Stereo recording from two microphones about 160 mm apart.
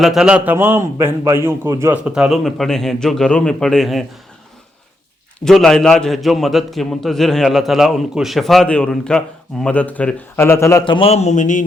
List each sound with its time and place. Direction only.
0.0 s a man's voice: centre (ahead or behind)
2.0 s a man's voice: 5° right (ahead or behind)
5.5 s a man's voice: 5° left (ahead or behind)
10.8 s speech: 35° left (ahead or behind); by 11.6 s 50° left (ahead or behind)